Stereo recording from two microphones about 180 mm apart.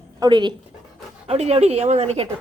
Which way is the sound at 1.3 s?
35° right (ahead or behind).